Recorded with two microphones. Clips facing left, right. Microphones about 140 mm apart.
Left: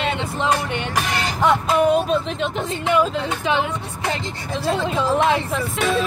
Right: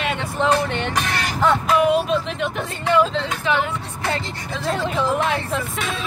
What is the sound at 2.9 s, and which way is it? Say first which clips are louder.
Speech: right 1 dB; 10° left (ahead or behind).